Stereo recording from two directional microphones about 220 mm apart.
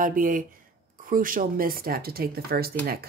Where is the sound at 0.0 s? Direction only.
40° right (ahead or behind).